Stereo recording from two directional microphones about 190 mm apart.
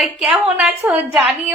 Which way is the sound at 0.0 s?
5° right (ahead or behind).